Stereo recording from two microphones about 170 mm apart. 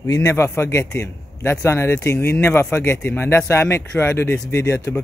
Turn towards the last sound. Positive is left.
turn(degrees=15)  # may be behind; listen again after turning